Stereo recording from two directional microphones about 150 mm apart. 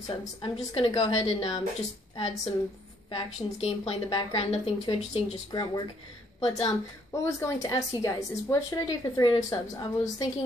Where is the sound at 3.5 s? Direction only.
40° left (ahead or behind).